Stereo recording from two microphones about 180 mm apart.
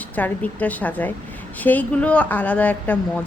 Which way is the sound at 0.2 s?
10° left (ahead or behind).